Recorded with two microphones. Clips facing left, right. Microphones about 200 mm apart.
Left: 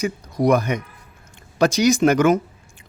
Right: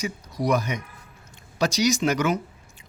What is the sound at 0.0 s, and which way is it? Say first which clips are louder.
A man's voice: left 7 dB; 55° left (ahead or behind).